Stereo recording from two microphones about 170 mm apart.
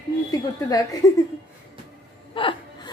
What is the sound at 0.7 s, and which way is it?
Speech, 20° left (ahead or behind).